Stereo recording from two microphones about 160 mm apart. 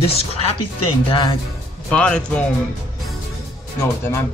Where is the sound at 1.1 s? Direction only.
30° left (ahead or behind).